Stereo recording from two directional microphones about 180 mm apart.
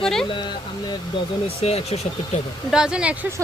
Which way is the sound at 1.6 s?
35° left (ahead or behind).